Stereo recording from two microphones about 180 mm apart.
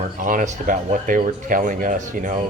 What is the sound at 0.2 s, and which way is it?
Speech, 45° right (ahead or behind).